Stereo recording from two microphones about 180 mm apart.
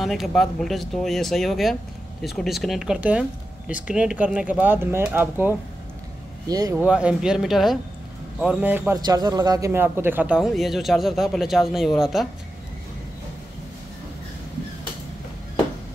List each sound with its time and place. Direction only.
0.0 s a man's voice: centre (ahead or behind)
6.4 s speech: 20° right (ahead or behind)
6.8 s a man's voice: 5° right (ahead or behind)